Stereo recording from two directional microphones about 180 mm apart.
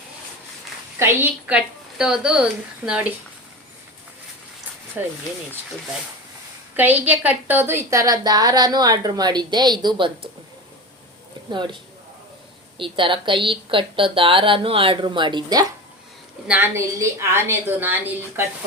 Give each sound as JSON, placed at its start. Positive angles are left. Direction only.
{"t": 0.9, "sound": "a woman's voice", "side_deg": -15}
{"t": 5.0, "sound": "a woman's voice", "side_deg": -10}
{"t": 6.7, "sound": "a woman's voice", "side_deg": -10}
{"t": 11.5, "sound": "a woman's voice", "side_deg": -25}